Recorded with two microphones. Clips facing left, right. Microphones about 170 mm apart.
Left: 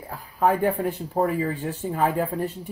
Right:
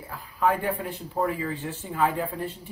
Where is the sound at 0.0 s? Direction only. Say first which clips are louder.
Left 3 dB; 45° left (ahead or behind).